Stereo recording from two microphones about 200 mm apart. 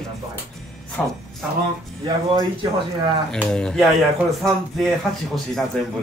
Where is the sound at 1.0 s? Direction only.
10° left (ahead or behind).